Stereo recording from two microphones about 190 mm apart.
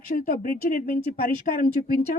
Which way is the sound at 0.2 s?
50° left (ahead or behind).